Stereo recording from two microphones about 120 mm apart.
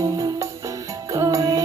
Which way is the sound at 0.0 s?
25° right (ahead or behind).